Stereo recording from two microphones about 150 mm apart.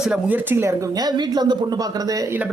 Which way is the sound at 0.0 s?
10° right (ahead or behind).